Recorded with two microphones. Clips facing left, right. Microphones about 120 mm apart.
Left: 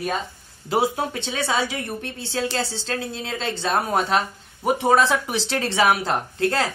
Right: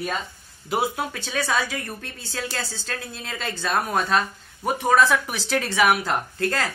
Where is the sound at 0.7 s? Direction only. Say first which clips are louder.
Left 3 dB; 30° left (ahead or behind).